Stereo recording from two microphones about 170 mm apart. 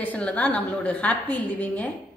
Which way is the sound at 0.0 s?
10° left (ahead or behind).